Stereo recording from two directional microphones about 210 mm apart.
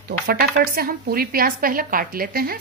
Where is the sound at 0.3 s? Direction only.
45° right (ahead or behind).